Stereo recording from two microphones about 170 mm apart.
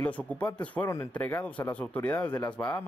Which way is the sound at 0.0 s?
10° left (ahead or behind).